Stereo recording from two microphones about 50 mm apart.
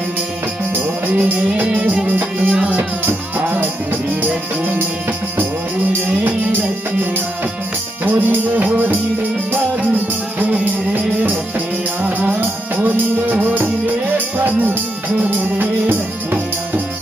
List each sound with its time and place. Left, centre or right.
0.7 s music: right
2.7 s music: right
8.0 s music: right
12.0 s music: right
12.4 s music: right